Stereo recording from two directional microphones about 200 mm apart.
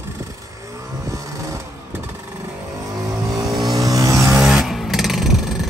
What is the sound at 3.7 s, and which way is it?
Vehicle, 15° right (ahead or behind).